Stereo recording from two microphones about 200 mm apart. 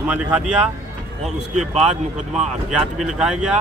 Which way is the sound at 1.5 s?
35° right (ahead or behind).